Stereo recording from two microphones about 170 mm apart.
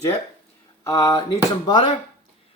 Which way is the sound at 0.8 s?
20° left (ahead or behind).